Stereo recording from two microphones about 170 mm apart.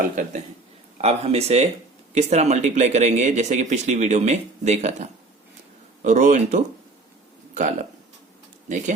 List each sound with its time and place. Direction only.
1.0 s speech: 35° right (ahead or behind)